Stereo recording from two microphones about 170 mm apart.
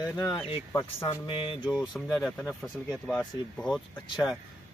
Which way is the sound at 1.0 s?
30° left (ahead or behind).